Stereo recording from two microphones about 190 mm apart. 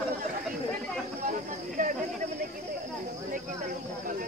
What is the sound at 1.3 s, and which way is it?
Cricket, 45° right (ahead or behind).